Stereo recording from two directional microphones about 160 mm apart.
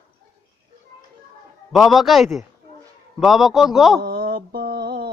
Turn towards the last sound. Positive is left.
turn(degrees=-75)  # may be behind; listen again after turning